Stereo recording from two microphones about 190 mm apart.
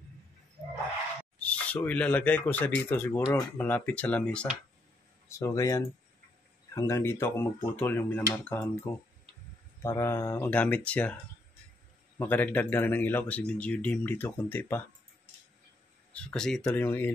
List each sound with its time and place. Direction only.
1.4 s speech: 5° left (ahead or behind)
5.3 s speech: 15° left (ahead or behind)
12.2 s speech: 10° left (ahead or behind)
16.1 s speech: 5° left (ahead or behind)